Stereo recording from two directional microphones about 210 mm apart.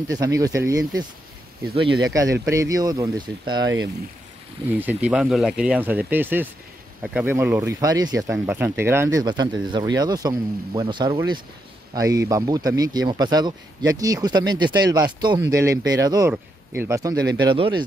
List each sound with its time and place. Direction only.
0.1 s speech: 15° right (ahead or behind)